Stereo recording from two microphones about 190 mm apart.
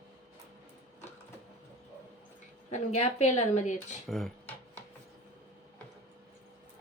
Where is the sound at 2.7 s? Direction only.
35° left (ahead or behind).